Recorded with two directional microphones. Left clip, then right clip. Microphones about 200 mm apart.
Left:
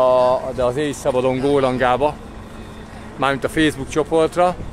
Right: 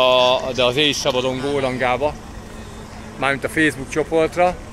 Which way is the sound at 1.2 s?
45° left (ahead or behind).